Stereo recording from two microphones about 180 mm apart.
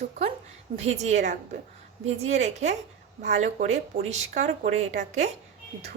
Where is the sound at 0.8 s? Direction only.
40° right (ahead or behind).